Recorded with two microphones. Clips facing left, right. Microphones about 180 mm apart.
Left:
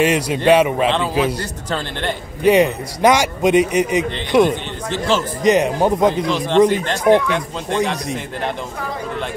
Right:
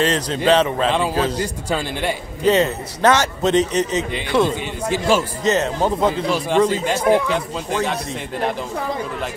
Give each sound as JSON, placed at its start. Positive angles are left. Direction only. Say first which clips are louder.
{"t": 0.0, "sound": "a man's voice", "louder": "left 3 dB", "side_deg": 10}
{"t": 1.4, "sound": "speech", "louder": "right 2 dB", "side_deg": -10}
{"t": 2.4, "sound": "a man's voice", "louder": "left 3 dB", "side_deg": 15}
{"t": 4.8, "sound": "speech", "louder": "right 1 dB", "side_deg": -10}
{"t": 5.4, "sound": "a man's voice", "louder": "left 4 dB", "side_deg": 15}
{"t": 6.2, "sound": "speech", "louder": "left 3 dB", "side_deg": -10}